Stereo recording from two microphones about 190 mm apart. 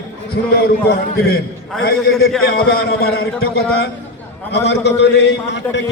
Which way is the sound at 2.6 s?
55° left (ahead or behind).